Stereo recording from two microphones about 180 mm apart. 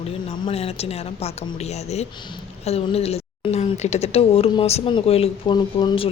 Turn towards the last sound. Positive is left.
turn(degrees=25)  # may be behind; listen again after turning